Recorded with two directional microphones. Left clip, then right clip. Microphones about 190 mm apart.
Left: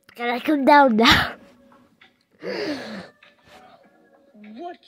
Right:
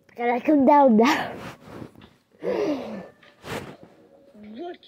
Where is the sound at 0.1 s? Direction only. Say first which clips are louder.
Right 1 dB; 25° left (ahead or behind).